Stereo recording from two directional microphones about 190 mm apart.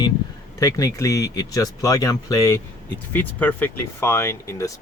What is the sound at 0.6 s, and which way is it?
Speech, 15° left (ahead or behind).